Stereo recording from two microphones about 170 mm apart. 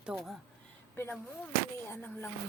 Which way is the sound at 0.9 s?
10° left (ahead or behind).